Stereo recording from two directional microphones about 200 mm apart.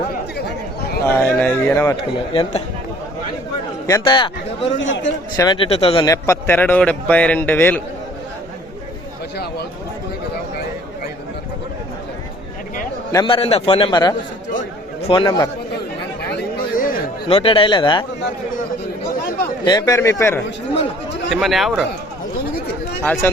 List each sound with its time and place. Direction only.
1.0 s a man's voice: 10° left (ahead or behind)
2.0 s a man's voice: 25° left (ahead or behind)
3.8 s a man's voice: 20° left (ahead or behind)
4.8 s a man's voice: 70° left (ahead or behind)
5.4 s a man's voice: 25° left (ahead or behind)
6.1 s a man's voice: 15° left (ahead or behind)
13.1 s a man's voice: 20° left (ahead or behind)
16.7 s a sound: 45° left (ahead or behind)
17.2 s a man's voice: 30° left (ahead or behind)
19.6 s a man's voice: 20° left (ahead or behind)
21.4 s speech: centre (ahead or behind)
23.0 s a man's voice: 10° left (ahead or behind)